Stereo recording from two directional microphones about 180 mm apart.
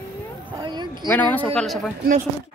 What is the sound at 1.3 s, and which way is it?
Speech, 5° left (ahead or behind).